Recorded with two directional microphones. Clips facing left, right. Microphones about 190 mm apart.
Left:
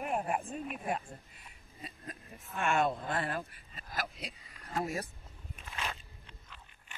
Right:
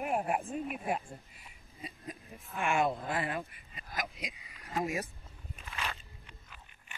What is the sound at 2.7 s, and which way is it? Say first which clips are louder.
Speech: even; 5° right (ahead or behind).